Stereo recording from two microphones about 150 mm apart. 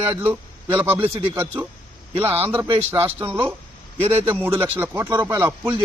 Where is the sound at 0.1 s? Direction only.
10° right (ahead or behind).